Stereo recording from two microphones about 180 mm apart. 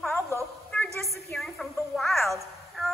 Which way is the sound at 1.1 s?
Centre (ahead or behind).